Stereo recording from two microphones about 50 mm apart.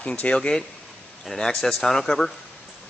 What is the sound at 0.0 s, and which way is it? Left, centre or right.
Speech, left.